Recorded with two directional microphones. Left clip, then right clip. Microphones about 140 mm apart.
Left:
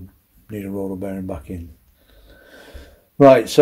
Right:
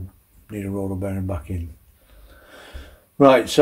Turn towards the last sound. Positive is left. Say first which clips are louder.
# left 3 dB
turn(degrees=35)  # may be behind; listen again after turning